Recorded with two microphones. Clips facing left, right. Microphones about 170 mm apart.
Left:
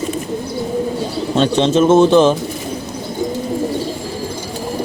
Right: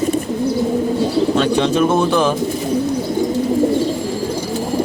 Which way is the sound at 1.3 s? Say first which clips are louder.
Left 1 dB; 25° left (ahead or behind).